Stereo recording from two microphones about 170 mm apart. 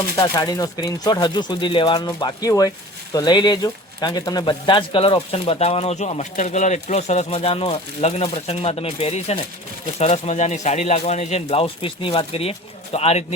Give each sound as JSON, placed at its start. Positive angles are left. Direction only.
{"t": 0.2, "sound": "speech", "side_deg": 25}